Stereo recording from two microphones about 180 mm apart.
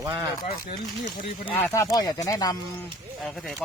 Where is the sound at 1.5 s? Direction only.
15° left (ahead or behind).